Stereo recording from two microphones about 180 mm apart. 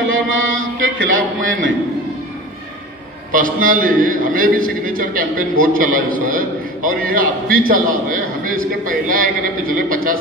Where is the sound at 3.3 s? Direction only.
50° right (ahead or behind).